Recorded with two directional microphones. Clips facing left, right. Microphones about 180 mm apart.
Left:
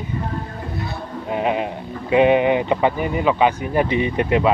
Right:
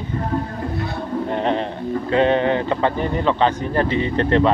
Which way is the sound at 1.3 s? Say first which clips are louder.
Left 3 dB; 10° left (ahead or behind).